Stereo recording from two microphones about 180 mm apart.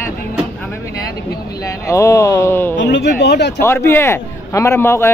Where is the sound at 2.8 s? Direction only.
75° left (ahead or behind).